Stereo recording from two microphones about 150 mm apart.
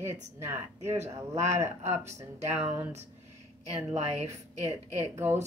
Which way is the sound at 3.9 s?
45° right (ahead or behind).